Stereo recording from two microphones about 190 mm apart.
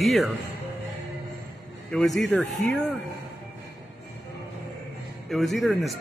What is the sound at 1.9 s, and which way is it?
Speech, centre (ahead or behind).